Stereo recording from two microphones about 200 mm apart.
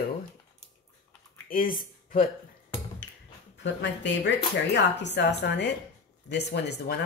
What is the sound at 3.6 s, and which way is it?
Speech, 65° left (ahead or behind).